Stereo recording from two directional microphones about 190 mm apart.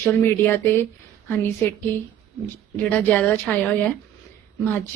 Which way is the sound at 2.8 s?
10° left (ahead or behind).